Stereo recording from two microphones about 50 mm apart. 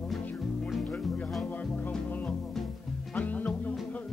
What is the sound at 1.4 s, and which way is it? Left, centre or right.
Music, left.